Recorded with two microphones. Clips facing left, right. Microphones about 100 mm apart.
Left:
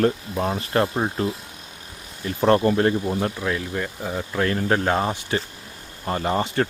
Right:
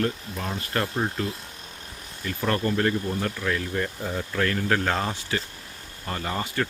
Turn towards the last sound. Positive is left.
turn(degrees=30)  # may be behind; listen again after turning